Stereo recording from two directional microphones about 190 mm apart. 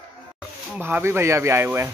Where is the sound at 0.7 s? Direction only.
10° right (ahead or behind).